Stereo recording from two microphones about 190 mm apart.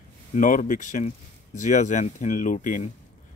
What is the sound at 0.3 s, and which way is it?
Speech, 40° left (ahead or behind).